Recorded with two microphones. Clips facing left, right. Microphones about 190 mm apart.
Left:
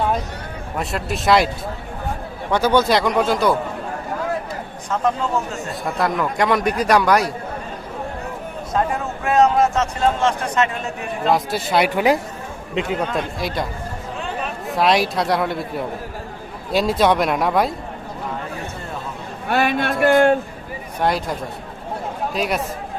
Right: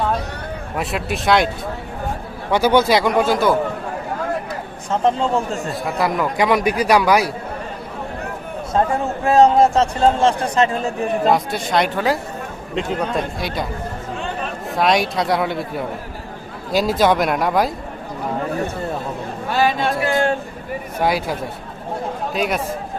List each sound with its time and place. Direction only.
0.8 s a man's voice: centre (ahead or behind)
2.5 s a man's voice: 10° right (ahead or behind)
4.9 s speech: 30° right (ahead or behind)
5.8 s a man's voice: 5° right (ahead or behind)
8.7 s a man's voice: 30° right (ahead or behind)
11.3 s a man's voice: centre (ahead or behind)
14.7 s a man's voice: centre (ahead or behind)
19.5 s speech: 60° left (ahead or behind)
21.0 s a man's voice: 5° right (ahead or behind)